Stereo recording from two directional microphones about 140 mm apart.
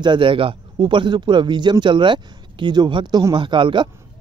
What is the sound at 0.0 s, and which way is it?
Speech, 35° right (ahead or behind).